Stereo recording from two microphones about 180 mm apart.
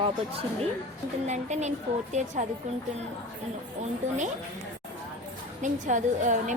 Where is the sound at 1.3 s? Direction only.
40° right (ahead or behind).